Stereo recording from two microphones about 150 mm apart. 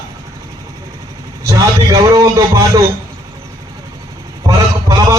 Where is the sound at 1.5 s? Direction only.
25° right (ahead or behind).